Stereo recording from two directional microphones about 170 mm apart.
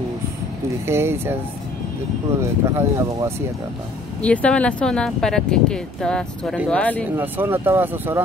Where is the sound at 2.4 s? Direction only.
15° right (ahead or behind).